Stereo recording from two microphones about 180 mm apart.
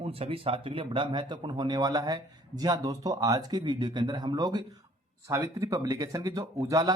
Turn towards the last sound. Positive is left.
turn(degrees=-20)  # may be behind; listen again after turning